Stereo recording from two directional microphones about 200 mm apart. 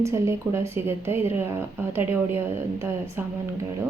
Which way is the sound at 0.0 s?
15° right (ahead or behind).